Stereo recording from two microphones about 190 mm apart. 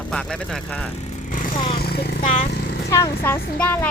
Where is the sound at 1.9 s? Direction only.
55° left (ahead or behind).